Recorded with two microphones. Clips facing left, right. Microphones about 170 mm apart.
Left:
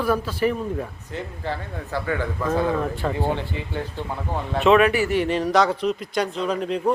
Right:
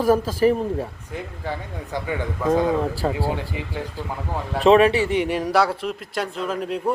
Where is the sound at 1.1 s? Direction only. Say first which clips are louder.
Left 1 dB; 15° right (ahead or behind).